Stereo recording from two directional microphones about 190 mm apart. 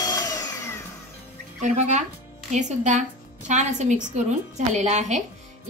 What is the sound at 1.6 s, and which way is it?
A woman's voice, 40° right (ahead or behind).